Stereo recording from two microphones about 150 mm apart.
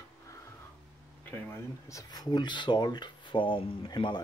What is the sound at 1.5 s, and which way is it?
Speech, 20° left (ahead or behind).